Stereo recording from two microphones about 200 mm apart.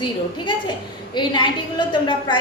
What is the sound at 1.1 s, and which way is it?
A woman's voice, 20° left (ahead or behind).